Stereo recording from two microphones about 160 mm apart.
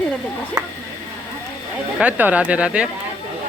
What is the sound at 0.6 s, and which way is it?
Speech, 25° right (ahead or behind).